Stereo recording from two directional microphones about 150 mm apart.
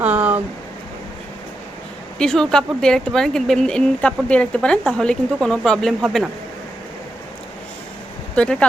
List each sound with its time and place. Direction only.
0.0 s a sound: 10° right (ahead or behind)
2.1 s speech: 5° left (ahead or behind)
8.4 s speech: 5° left (ahead or behind)